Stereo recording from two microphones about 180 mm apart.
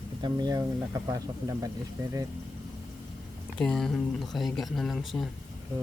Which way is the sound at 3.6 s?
5° left (ahead or behind).